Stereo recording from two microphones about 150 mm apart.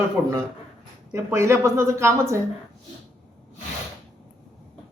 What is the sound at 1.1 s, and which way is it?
Speech, 20° right (ahead or behind).